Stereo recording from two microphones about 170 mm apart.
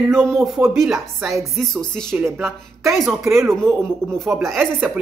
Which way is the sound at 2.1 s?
15° right (ahead or behind).